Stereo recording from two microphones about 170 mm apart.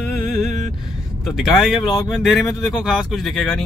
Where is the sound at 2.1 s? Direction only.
Centre (ahead or behind).